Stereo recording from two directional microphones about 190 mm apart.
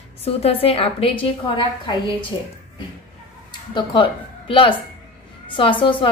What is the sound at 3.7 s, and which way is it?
A woman's voice, 25° left (ahead or behind).